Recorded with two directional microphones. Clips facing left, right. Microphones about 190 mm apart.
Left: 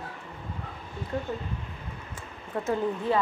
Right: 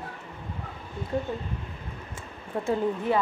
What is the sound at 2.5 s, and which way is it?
Speech, 25° right (ahead or behind).